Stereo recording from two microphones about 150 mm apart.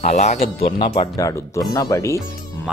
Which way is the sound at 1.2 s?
20° left (ahead or behind).